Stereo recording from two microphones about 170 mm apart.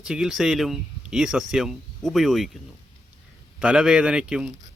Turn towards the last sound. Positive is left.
turn(degrees=-5)  # may be behind; listen again after turning